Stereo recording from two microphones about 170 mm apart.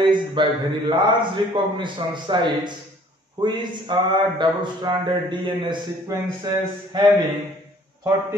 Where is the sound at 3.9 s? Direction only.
25° right (ahead or behind).